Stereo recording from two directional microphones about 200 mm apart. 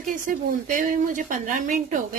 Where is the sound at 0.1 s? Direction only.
40° right (ahead or behind).